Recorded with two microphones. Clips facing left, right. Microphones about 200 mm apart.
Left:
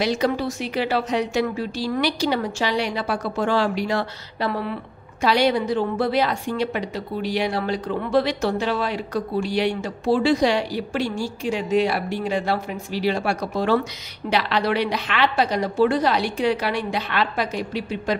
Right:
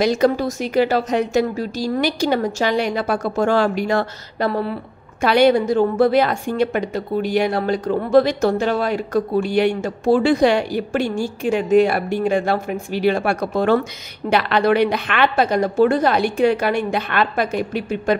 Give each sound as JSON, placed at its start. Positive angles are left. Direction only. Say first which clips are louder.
{"t": 0.0, "sound": "a woman's voice", "louder": "right 5 dB", "side_deg": -45}
{"t": 5.2, "sound": "a woman's voice", "louder": "right 5 dB", "side_deg": -55}